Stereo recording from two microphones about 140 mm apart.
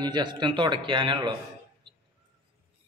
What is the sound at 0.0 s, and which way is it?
Speech, 35° right (ahead or behind).